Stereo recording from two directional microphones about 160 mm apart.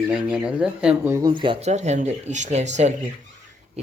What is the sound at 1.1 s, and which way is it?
Speech, 30° right (ahead or behind).